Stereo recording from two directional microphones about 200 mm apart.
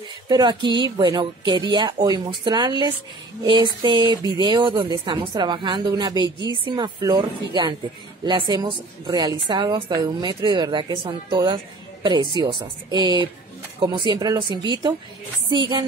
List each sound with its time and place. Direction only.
0.3 s a woman's voice: 20° right (ahead or behind)